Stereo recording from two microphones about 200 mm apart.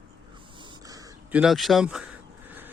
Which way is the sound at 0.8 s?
20° right (ahead or behind).